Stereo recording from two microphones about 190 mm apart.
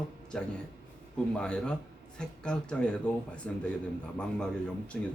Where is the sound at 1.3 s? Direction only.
5° left (ahead or behind).